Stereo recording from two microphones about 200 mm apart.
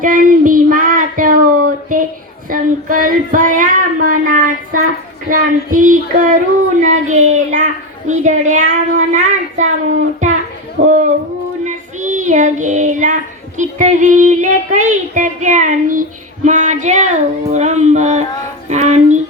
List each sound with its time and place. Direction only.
0.0 s child singing: 40° right (ahead or behind)
5.3 s speech: 40° right (ahead or behind)
10.8 s a sound: 40° right (ahead or behind)
11.6 s child singing: 35° right (ahead or behind)
13.6 s speech: 35° right (ahead or behind)